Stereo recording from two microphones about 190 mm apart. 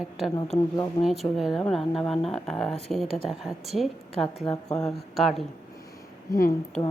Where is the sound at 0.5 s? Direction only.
15° left (ahead or behind).